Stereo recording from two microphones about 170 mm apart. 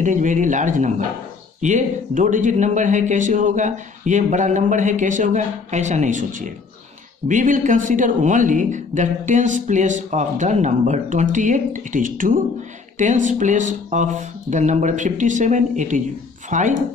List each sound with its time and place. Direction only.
0.0 s speech: 50° right (ahead or behind)